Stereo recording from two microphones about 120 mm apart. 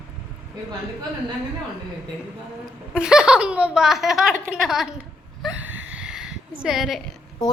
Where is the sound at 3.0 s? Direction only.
5° right (ahead or behind).